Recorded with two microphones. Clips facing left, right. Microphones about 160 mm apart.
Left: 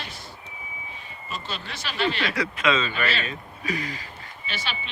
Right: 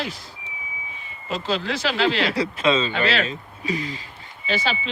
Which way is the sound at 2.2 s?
30° right (ahead or behind).